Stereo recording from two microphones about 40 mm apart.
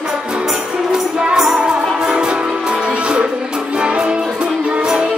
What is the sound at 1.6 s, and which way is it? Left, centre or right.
Music, right.